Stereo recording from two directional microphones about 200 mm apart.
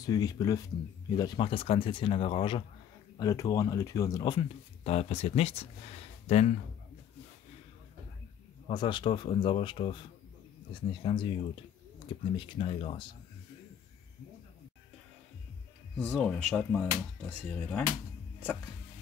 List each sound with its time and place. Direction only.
0.0 s speech: 20° left (ahead or behind)
8.6 s speech: 25° left (ahead or behind)
16.0 s speech: 5° left (ahead or behind)